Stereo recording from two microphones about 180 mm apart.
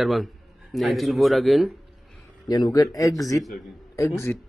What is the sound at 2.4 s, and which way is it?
A man's voice, 20° left (ahead or behind).